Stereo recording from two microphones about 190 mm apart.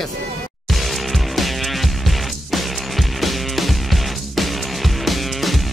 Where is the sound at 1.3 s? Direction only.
Centre (ahead or behind).